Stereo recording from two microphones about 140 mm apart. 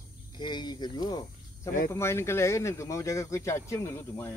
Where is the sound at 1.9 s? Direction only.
20° left (ahead or behind).